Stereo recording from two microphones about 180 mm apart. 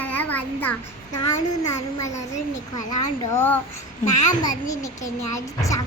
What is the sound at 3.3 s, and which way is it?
Speech, 10° left (ahead or behind).